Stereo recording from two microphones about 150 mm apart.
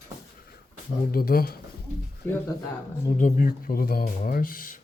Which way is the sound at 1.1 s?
80° left.